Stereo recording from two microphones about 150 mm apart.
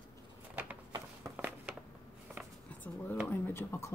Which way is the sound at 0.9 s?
25° right (ahead or behind).